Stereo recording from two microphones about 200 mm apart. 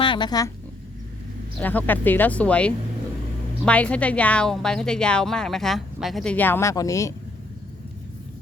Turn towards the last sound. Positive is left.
turn(degrees=15)  # may be behind; listen again after turning